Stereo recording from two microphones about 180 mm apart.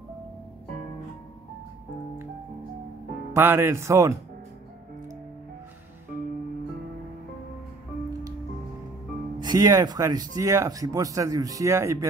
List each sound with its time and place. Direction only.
3.3 s speech: 15° right (ahead or behind)
9.4 s speech: 20° right (ahead or behind)